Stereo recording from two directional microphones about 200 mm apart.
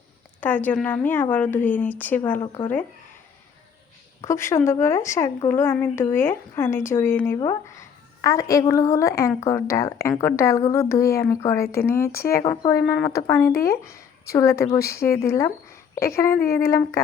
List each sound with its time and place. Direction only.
0.3 s speech: 10° left (ahead or behind)
4.2 s a woman's voice: 15° left (ahead or behind)